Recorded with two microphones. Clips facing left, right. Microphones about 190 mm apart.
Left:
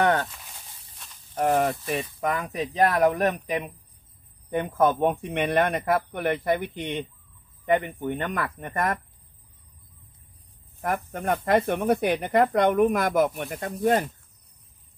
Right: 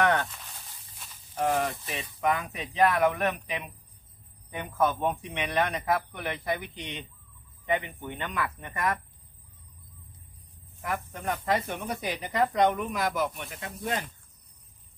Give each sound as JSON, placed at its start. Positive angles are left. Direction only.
{"t": 0.0, "sound": "a sound", "side_deg": 30}
{"t": 1.3, "sound": "speech", "side_deg": 50}
{"t": 11.4, "sound": "speech", "side_deg": 55}